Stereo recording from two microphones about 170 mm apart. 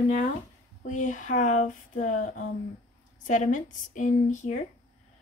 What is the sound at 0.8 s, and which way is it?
A woman's voice, 45° left (ahead or behind).